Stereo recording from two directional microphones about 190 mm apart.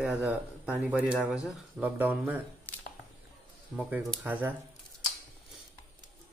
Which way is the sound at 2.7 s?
10° left (ahead or behind).